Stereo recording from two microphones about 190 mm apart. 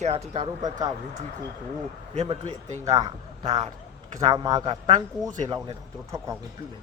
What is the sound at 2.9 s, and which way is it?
Speech, 20° right (ahead or behind).